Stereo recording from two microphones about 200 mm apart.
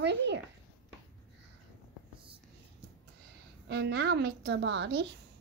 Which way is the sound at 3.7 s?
55° right (ahead or behind).